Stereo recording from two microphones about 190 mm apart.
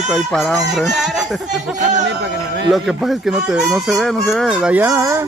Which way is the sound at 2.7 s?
Centre (ahead or behind).